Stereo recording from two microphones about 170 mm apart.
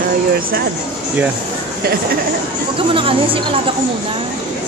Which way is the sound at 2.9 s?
30° right (ahead or behind).